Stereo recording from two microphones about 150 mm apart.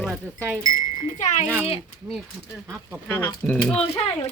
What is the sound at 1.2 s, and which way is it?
Speech, 55° left (ahead or behind).